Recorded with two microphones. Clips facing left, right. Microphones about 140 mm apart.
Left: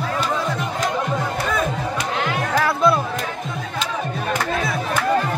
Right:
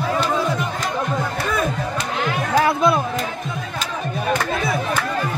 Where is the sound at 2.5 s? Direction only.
20° right (ahead or behind).